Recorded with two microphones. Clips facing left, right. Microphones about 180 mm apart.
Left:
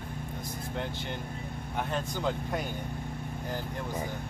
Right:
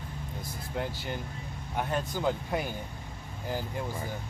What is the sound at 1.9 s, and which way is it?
Speech, 5° right (ahead or behind).